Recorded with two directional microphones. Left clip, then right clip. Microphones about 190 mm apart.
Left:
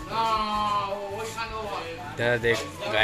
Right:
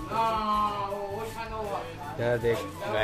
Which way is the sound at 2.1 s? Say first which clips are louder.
Left 3 dB; centre (ahead or behind).